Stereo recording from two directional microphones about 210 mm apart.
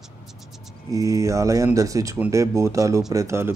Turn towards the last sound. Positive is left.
turn(degrees=-15)  # may be behind; listen again after turning